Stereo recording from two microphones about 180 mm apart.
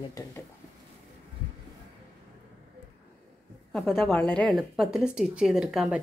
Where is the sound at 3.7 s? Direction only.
5° left (ahead or behind).